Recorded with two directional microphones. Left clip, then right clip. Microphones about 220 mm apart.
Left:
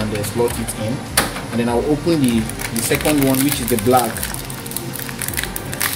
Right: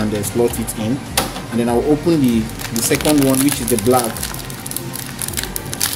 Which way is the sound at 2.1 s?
20° right (ahead or behind).